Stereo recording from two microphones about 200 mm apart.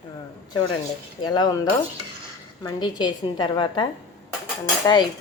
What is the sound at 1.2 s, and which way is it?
A woman's voice, 20° left (ahead or behind).